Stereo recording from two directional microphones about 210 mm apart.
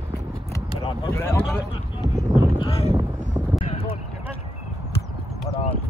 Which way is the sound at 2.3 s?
15° right (ahead or behind).